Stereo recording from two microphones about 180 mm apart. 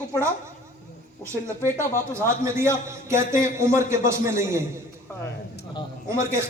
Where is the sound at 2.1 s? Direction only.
15° right (ahead or behind).